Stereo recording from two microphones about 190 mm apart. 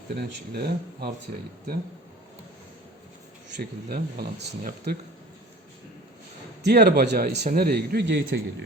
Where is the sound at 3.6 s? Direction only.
50° right (ahead or behind).